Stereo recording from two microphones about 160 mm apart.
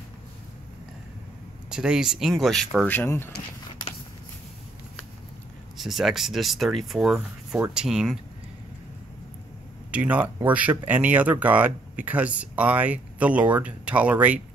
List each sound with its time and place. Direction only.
1.7 s speech: 5° right (ahead or behind)
2.9 s speech: 15° left (ahead or behind)
5.8 s speech: centre (ahead or behind)
9.8 s speech: 10° right (ahead or behind)